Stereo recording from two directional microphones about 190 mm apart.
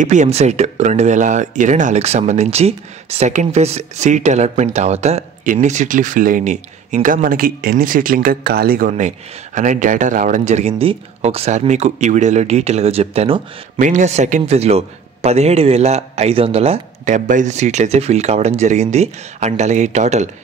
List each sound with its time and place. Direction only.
0.0 s speech: 40° right (ahead or behind)